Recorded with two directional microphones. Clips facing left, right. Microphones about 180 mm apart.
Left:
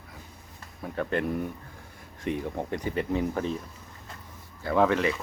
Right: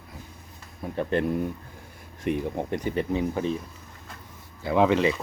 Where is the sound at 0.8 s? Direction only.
20° right (ahead or behind).